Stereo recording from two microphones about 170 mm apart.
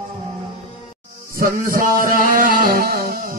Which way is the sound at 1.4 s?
55° right (ahead or behind).